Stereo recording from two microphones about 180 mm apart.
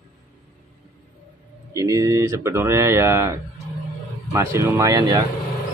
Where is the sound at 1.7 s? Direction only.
15° right (ahead or behind).